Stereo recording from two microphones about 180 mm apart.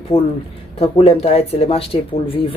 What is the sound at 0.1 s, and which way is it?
Speech, 30° left (ahead or behind).